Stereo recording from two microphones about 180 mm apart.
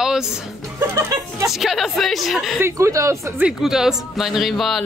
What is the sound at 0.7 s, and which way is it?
Speech, 15° right (ahead or behind).